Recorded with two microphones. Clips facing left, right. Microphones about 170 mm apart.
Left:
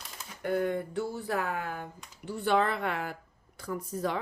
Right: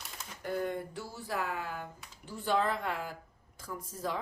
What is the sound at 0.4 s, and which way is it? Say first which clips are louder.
A woman's voice: left 5 dB; 60° left (ahead or behind).